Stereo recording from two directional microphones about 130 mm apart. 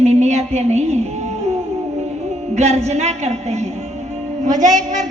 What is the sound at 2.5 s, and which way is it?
A woman's voice, 60° right (ahead or behind).